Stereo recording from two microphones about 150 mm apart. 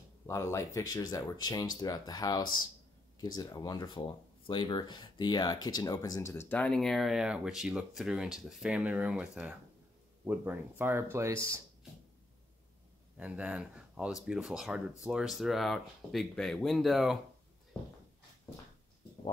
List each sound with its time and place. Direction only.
0.3 s speech: 20° left (ahead or behind)
6.5 s speech: 5° left (ahead or behind); by 11.6 s 20° right (ahead or behind)
13.2 s speech: 10° right (ahead or behind)